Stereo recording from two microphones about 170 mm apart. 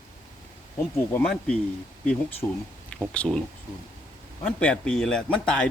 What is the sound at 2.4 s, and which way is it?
Speech, 20° left (ahead or behind).